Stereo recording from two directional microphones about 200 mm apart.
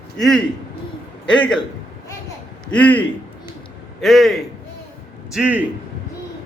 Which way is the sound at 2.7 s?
5° left (ahead or behind).